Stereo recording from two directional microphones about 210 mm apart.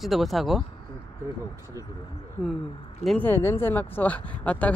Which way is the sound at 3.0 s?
5° left (ahead or behind).